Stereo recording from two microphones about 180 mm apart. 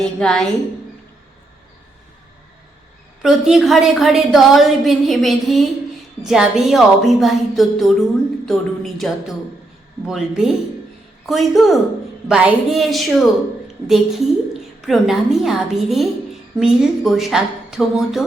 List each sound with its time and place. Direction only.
0.0 s a woman's voice: centre (ahead or behind)
3.2 s a woman's voice: centre (ahead or behind)